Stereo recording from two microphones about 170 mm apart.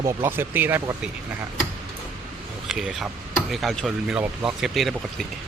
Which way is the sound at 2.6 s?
5° right (ahead or behind).